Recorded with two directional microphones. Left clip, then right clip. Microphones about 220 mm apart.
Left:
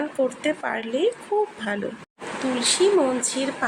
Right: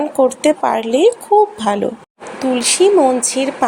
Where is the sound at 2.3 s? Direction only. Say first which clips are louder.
Right 7 dB; 30° right (ahead or behind).